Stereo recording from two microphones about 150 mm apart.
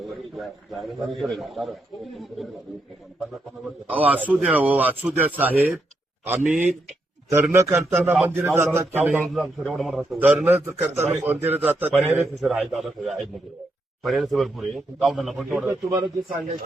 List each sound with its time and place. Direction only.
0.0 s a man's voice: centre (ahead or behind)
3.8 s a man's voice: 10° right (ahead or behind)
9.2 s speech: centre (ahead or behind)
10.2 s a man's voice: 10° right (ahead or behind)
15.6 s speech: 20° right (ahead or behind)